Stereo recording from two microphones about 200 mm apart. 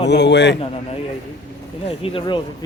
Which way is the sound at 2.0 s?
25° left (ahead or behind).